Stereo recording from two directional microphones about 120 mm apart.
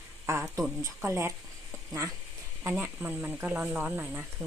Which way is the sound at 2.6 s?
15° right (ahead or behind).